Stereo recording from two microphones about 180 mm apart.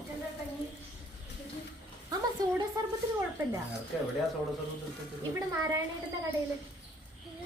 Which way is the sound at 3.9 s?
Centre (ahead or behind).